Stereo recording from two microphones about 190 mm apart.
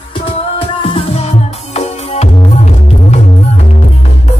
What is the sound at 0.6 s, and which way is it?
Music, 30° left (ahead or behind).